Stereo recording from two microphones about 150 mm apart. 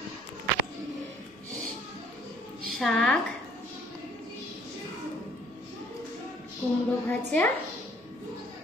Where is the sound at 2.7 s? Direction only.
Centre (ahead or behind).